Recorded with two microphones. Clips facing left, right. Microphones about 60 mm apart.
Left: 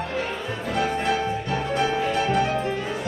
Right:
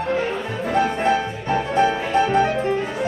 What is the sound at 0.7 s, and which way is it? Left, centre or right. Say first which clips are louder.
Music: right 5 dB; right.